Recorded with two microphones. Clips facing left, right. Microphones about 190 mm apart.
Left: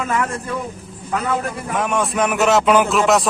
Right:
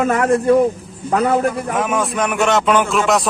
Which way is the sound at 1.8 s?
Centre (ahead or behind).